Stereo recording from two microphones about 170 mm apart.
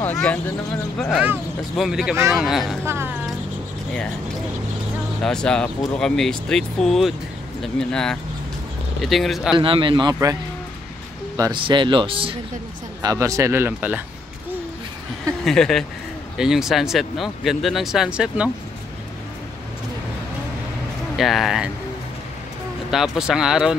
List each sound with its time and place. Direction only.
0.0 s speech: 10° left (ahead or behind)
2.8 s speech: 15° right (ahead or behind)
5.2 s speech: 5° left (ahead or behind)
9.6 s speech: 30° right (ahead or behind)
11.3 s speech: 25° right (ahead or behind)
13.0 s speech: 20° right (ahead or behind)
15.4 s speech: 5° left (ahead or behind)
21.2 s speech: centre (ahead or behind)
22.8 s speech: centre (ahead or behind)